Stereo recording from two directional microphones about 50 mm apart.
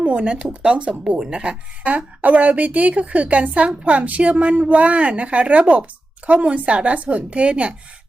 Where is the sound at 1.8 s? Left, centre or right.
Right.